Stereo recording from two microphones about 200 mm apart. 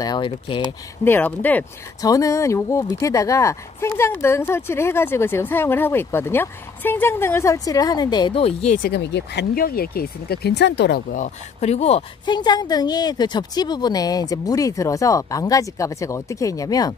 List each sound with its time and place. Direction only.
0.0 s a woman's voice: 25° left (ahead or behind)
1.0 s speech: 10° left (ahead or behind); by 8.6 s 30° left (ahead or behind)
8.7 s speech: 50° left (ahead or behind)
11.1 s a woman's voice: 35° left (ahead or behind); by 16.9 s 20° left (ahead or behind)